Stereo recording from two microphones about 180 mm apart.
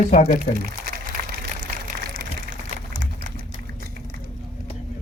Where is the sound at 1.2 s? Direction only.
50° right (ahead or behind).